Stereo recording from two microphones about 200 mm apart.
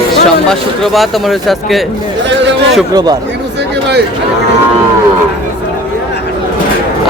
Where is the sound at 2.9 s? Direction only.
20° right (ahead or behind).